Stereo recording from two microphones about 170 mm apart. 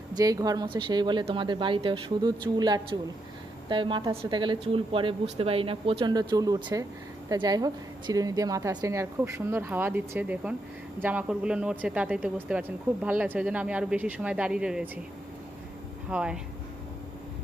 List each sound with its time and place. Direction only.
0.2 s speech: 20° right (ahead or behind); by 14.8 s 5° right (ahead or behind)
16.0 s speech: 5° right (ahead or behind)